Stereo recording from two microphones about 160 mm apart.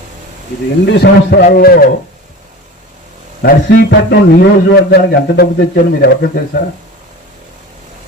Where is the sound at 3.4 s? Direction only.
85° left.